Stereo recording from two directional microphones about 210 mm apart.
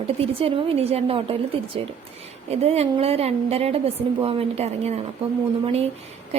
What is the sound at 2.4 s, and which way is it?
Speech, 30° right (ahead or behind).